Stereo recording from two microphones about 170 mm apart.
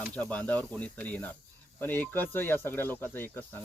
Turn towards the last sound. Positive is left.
turn(degrees=10)  # may be behind; listen again after turning